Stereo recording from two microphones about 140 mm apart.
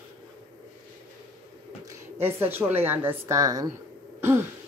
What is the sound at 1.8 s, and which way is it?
Speech, 15° right (ahead or behind).